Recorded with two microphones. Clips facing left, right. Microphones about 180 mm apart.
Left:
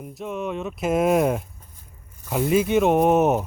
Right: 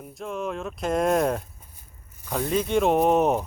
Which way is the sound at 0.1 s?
Centre (ahead or behind).